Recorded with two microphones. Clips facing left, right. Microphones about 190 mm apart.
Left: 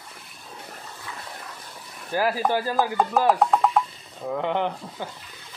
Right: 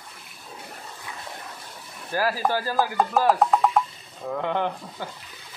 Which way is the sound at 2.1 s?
15° left (ahead or behind).